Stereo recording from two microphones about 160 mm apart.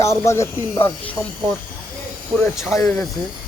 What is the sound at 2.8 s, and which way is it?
Speech, 5° left (ahead or behind).